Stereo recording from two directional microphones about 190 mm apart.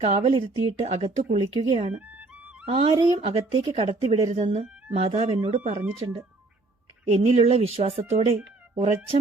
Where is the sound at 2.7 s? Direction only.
30° right (ahead or behind).